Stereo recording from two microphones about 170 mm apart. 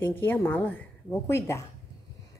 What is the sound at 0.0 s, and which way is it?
A woman's voice, 10° left (ahead or behind).